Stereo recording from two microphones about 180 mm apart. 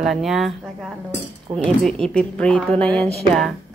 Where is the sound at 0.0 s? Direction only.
Centre (ahead or behind).